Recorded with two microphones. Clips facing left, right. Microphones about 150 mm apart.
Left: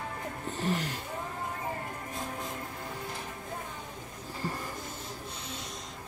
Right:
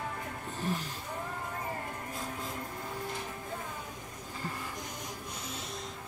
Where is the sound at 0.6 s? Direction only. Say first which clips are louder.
Left 4 dB; 90° left.